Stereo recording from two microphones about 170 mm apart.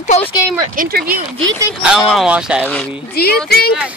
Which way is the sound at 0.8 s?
60° right (ahead or behind).